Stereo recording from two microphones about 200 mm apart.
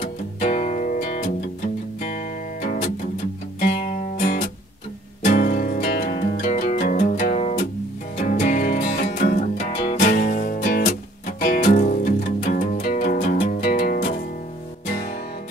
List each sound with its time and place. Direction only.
0.0 s music: 40° left (ahead or behind)
5.2 s music: 40° left (ahead or behind)